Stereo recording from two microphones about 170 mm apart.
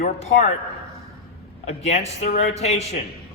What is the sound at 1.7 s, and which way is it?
Speech, 40° left (ahead or behind).